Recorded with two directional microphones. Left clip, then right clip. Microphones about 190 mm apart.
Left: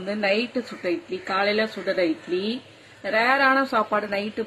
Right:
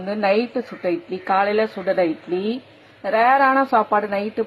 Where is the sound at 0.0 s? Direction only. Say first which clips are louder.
Right 4 dB; 10° right (ahead or behind).